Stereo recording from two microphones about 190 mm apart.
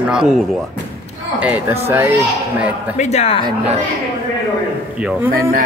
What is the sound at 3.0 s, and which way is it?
Speech, 35° left (ahead or behind).